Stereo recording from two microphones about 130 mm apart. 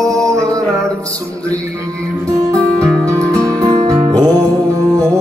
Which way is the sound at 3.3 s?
25° right (ahead or behind).